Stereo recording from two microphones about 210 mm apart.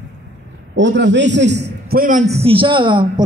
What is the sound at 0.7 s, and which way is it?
A man's voice, 60° right (ahead or behind).